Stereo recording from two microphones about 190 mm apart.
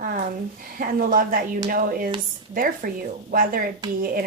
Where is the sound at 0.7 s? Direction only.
45° right (ahead or behind).